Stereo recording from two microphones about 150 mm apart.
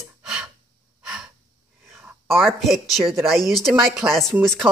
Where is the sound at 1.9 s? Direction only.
15° right (ahead or behind).